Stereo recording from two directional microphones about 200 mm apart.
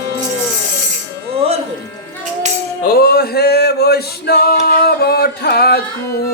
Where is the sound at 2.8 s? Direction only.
50° left (ahead or behind).